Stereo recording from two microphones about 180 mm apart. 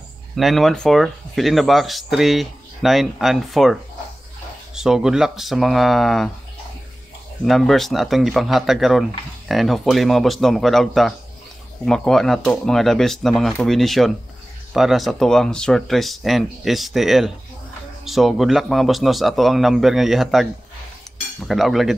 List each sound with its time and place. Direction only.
0.4 s speech: centre (ahead or behind)
7.4 s speech: centre (ahead or behind)
21.5 s speech: centre (ahead or behind)